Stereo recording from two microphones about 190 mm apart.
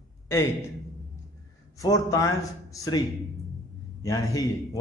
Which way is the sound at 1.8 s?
15° left (ahead or behind).